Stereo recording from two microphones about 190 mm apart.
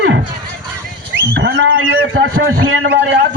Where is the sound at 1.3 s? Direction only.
65° right (ahead or behind); by 3.1 s 80° right.